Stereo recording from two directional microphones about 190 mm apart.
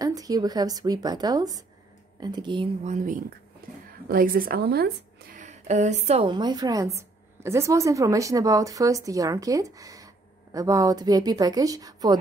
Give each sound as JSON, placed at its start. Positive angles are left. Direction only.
{"t": 0.0, "sound": "a woman's voice", "side_deg": -20}
{"t": 2.8, "sound": "speech", "side_deg": -40}
{"t": 3.6, "sound": "a sound", "side_deg": -50}
{"t": 4.1, "sound": "a woman's voice", "side_deg": -50}